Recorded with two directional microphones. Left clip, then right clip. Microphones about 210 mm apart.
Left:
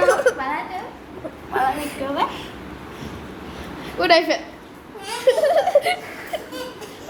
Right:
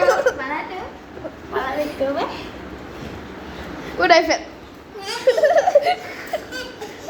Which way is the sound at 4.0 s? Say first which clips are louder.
Right 2 dB; 5° left (ahead or behind).